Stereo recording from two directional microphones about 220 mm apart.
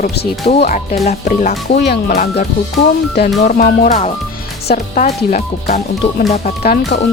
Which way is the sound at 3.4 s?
35° left (ahead or behind).